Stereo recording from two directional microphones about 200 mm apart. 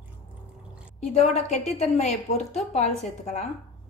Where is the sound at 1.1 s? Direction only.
35° left (ahead or behind).